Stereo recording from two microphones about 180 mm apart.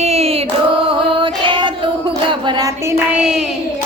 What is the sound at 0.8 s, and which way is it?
Female singing, 30° right (ahead or behind).